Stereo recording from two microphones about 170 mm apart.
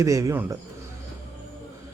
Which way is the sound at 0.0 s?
20° right (ahead or behind).